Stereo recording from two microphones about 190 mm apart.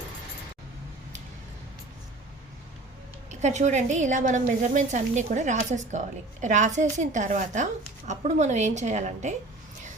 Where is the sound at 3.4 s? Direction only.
40° right (ahead or behind).